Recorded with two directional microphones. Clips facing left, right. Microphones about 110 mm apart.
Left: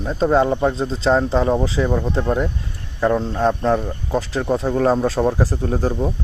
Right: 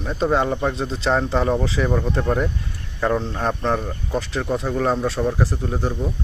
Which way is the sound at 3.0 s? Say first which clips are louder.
Left 4 dB; 35° left (ahead or behind).